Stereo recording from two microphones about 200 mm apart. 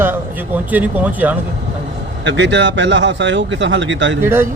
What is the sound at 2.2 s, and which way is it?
Speech, 65° right (ahead or behind).